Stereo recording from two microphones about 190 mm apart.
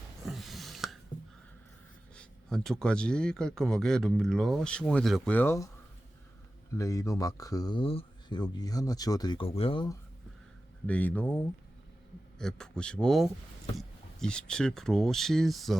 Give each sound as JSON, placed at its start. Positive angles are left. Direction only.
{"t": 0.3, "sound": "a sound", "side_deg": 0}
{"t": 2.1, "sound": "speech", "side_deg": 5}
{"t": 6.7, "sound": "speech", "side_deg": 15}
{"t": 10.8, "sound": "speech", "side_deg": 5}